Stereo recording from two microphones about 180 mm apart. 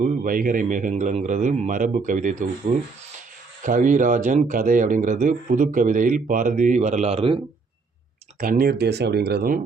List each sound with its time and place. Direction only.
0.0 s speech: 50° right (ahead or behind); by 7.4 s 30° right (ahead or behind)
8.4 s speech: 55° right (ahead or behind)